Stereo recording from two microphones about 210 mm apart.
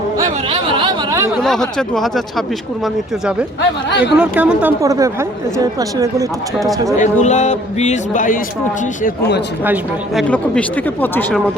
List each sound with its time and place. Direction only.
0.2 s a sound: 20° right (ahead or behind)
1.4 s a woman's voice: centre (ahead or behind); by 5.1 s 15° right (ahead or behind)
7.0 s a man's voice: 35° left (ahead or behind)
9.0 s a man's voice: 55° left (ahead or behind)
10.2 s speech: 5° left (ahead or behind)